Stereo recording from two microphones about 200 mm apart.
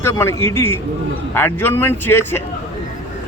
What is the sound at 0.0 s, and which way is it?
A man's voice, 15° left (ahead or behind).